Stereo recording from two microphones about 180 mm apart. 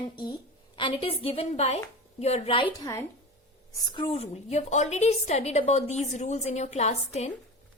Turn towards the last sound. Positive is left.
turn(degrees=40)  # may be behind; listen again after turning